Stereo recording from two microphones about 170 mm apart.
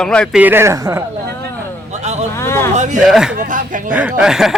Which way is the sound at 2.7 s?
45° right (ahead or behind).